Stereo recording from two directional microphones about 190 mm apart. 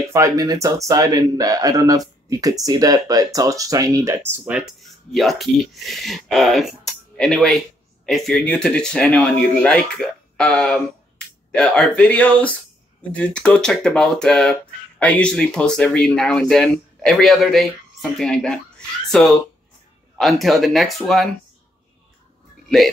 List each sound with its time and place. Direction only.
0.1 s speech: 15° right (ahead or behind); by 21.3 s centre (ahead or behind)